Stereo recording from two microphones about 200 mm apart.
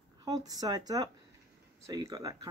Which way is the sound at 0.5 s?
20° right (ahead or behind).